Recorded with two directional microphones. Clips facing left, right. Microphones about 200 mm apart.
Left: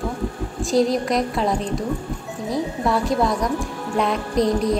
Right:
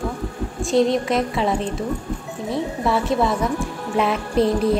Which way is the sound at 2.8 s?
Centre (ahead or behind).